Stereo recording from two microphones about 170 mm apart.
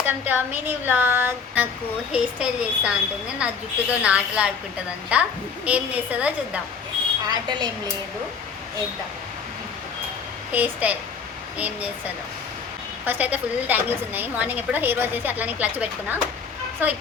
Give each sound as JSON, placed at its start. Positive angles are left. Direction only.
{"t": 0.0, "sound": "a woman's voice", "side_deg": -10}
{"t": 7.3, "sound": "a woman's voice", "side_deg": -25}
{"t": 10.5, "sound": "a woman's voice", "side_deg": -10}
{"t": 13.1, "sound": "a woman's voice", "side_deg": -10}